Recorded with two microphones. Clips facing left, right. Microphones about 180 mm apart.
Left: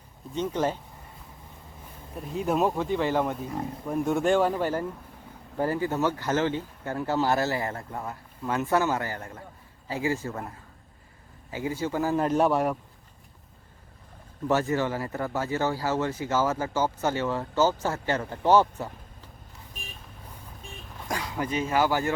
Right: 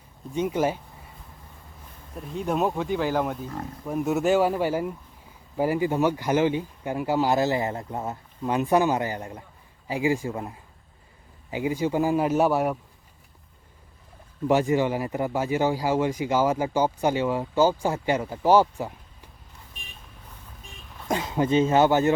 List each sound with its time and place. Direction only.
0.3 s speech: 10° right (ahead or behind)
2.1 s speech: 5° left (ahead or behind); by 10.4 s 15° right (ahead or behind)
11.5 s speech: 15° right (ahead or behind)
14.4 s speech: 15° right (ahead or behind)
21.1 s speech: 25° right (ahead or behind)